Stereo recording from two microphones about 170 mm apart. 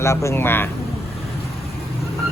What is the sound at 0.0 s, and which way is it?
Speech, 15° left (ahead or behind).